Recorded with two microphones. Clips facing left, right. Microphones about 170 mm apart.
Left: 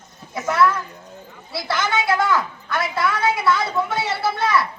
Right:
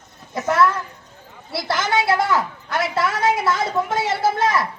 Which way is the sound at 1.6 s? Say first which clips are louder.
Right 2 dB; 40° right (ahead or behind).